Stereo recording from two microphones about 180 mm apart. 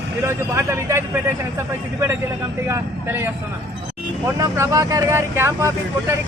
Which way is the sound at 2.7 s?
15° right (ahead or behind).